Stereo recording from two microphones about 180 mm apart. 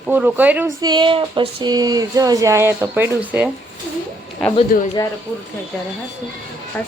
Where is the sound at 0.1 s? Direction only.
10° right (ahead or behind).